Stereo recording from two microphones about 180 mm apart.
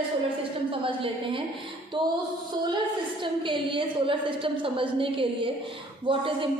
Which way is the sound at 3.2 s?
25° right (ahead or behind).